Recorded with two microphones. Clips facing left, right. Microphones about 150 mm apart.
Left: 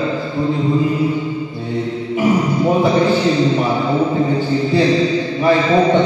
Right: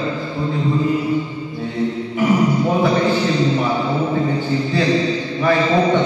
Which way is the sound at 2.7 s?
20° left (ahead or behind).